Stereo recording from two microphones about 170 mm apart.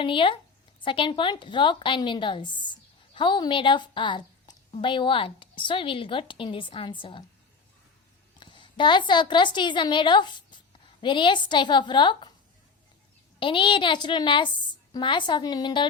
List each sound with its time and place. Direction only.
0.0 s a woman's voice: 30° left (ahead or behind)
8.4 s a woman's voice: 30° left (ahead or behind)
13.4 s a woman's voice: 30° left (ahead or behind)